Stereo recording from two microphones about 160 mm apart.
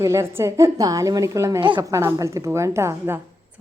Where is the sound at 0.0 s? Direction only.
15° right (ahead or behind).